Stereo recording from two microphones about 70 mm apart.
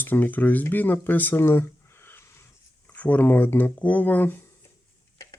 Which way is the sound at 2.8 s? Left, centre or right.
Left.